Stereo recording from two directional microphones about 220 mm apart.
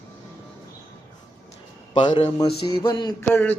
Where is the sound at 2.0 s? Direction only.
25° left (ahead or behind).